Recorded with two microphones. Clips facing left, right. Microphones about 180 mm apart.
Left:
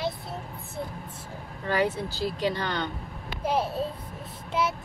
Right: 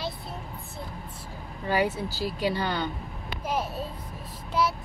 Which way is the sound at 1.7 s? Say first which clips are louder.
Even; 10° right (ahead or behind).